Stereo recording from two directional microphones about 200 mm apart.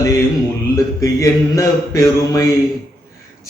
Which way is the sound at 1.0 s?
15° left (ahead or behind).